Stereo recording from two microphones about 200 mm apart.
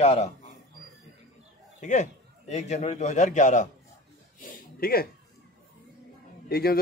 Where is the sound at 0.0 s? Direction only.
35° left (ahead or behind).